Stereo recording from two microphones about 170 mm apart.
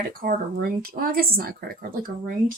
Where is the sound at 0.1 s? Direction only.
60° right (ahead or behind).